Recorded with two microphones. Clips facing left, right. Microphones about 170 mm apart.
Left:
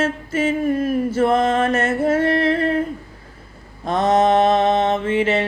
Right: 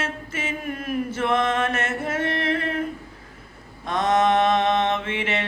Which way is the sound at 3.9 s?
30° left (ahead or behind).